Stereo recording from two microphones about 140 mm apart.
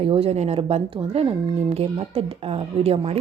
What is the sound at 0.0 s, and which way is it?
A woman's voice, 40° right (ahead or behind).